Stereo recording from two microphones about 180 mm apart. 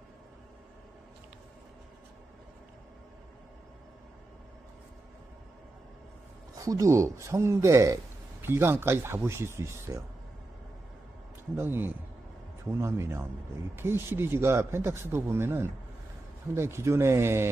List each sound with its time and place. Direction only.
6.6 s speech: 20° right (ahead or behind)
11.5 s speech: 10° right (ahead or behind)